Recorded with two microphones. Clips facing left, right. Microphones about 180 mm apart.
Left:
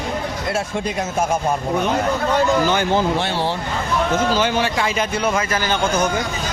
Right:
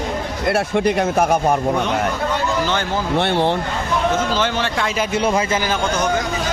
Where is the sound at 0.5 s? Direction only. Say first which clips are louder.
Right 7 dB; 65° right (ahead or behind).